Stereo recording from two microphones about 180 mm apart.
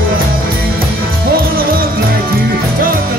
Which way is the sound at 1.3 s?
55° right (ahead or behind).